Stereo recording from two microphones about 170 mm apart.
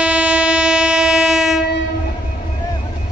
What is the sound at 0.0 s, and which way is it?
Train, 5° right (ahead or behind).